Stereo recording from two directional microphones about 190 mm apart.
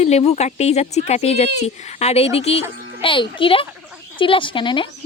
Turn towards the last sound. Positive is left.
turn(degrees=25)  # may be behind; listen again after turning